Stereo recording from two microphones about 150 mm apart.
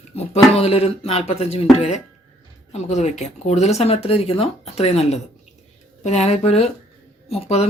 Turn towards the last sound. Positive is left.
turn(degrees=45)  # may be behind; listen again after turning